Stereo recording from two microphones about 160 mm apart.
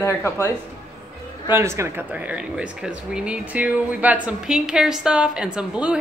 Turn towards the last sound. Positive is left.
turn(degrees=-5)  # may be behind; listen again after turning